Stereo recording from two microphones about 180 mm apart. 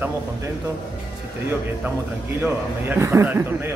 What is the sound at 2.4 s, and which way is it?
A man's voice, 10° right (ahead or behind).